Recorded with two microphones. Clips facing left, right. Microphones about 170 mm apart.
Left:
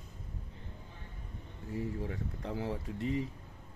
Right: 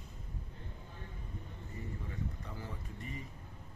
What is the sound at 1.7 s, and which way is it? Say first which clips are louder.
Speech: left 10 dB; 80° left.